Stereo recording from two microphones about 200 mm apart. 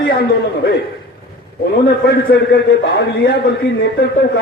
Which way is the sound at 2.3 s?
55° left (ahead or behind).